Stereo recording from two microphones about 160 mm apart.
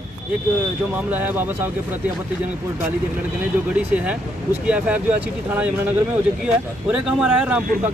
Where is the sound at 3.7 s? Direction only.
10° right (ahead or behind).